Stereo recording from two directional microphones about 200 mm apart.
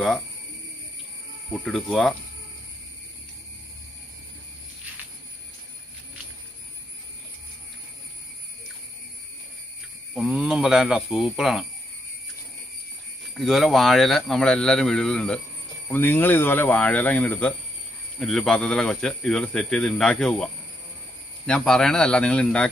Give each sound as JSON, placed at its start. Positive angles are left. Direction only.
{"t": 1.5, "sound": "a man's voice", "side_deg": 5}
{"t": 10.1, "sound": "a man's voice", "side_deg": -5}
{"t": 13.4, "sound": "a man's voice", "side_deg": 0}
{"t": 21.5, "sound": "a man's voice", "side_deg": 5}